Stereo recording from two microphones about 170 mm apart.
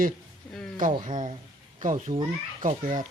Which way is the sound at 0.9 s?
30° right (ahead or behind).